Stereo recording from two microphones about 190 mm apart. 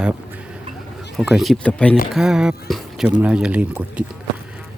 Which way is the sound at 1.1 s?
Centre (ahead or behind).